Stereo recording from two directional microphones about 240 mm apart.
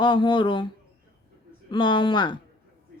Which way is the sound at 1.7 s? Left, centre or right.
Centre.